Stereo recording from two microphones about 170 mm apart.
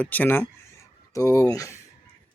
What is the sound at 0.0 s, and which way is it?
Speech, 10° left (ahead or behind).